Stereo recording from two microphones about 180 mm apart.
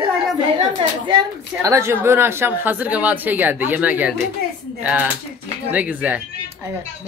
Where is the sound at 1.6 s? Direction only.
15° right (ahead or behind).